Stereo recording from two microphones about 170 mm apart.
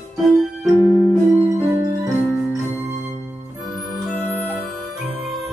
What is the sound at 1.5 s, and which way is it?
Music, 20° right (ahead or behind).